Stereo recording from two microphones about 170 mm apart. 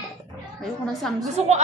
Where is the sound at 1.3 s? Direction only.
40° right (ahead or behind).